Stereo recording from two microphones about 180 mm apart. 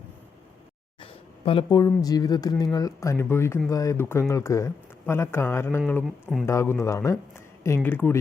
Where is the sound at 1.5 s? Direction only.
25° left (ahead or behind).